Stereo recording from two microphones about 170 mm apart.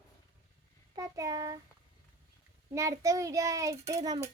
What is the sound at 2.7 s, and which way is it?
A child's voice, 20° right (ahead or behind).